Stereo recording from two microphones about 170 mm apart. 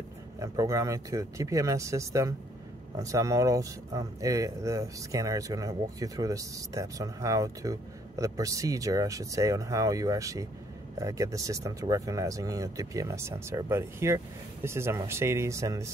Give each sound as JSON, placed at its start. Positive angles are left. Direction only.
{"t": 0.4, "sound": "speech", "side_deg": -20}